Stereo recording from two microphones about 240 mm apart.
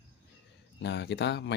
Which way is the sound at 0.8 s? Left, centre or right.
Left.